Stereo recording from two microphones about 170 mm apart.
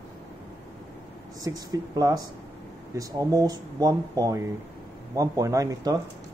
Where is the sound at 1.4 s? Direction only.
20° right (ahead or behind).